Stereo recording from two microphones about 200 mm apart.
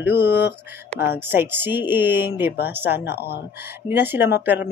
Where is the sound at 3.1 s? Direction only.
55° left (ahead or behind).